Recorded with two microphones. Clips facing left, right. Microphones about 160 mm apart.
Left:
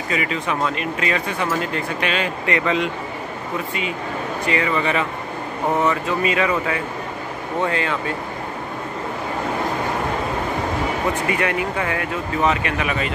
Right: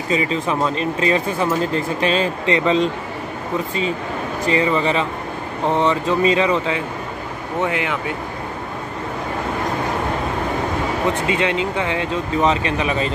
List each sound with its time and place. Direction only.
0.1 s speech: 30° right (ahead or behind)
4.5 s speech: 30° right (ahead or behind)
11.2 s speech: 20° right (ahead or behind)